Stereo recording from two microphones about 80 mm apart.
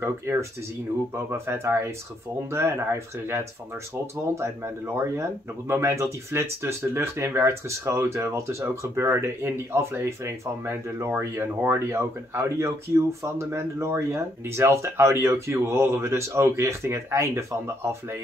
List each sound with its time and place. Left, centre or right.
0.0 s speech: right